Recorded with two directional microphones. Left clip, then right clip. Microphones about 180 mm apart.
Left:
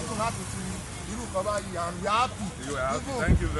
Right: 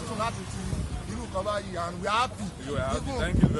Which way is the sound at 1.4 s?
10° right (ahead or behind).